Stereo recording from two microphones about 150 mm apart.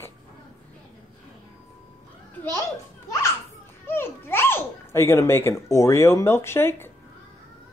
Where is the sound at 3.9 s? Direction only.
15° left (ahead or behind).